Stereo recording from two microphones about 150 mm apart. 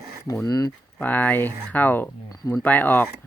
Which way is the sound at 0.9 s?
10° left (ahead or behind).